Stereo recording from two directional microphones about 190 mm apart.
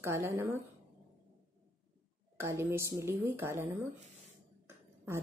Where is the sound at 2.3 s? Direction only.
15° right (ahead or behind).